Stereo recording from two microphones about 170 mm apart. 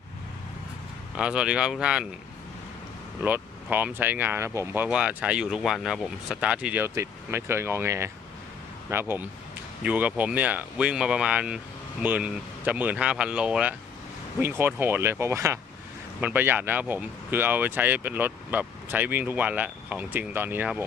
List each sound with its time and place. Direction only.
1.1 s speech: 5° right (ahead or behind)
3.2 s speech: 10° right (ahead or behind)
14.8 s speech: 10° right (ahead or behind)